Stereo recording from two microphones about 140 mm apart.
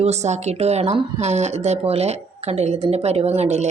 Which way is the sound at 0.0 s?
50° right (ahead or behind).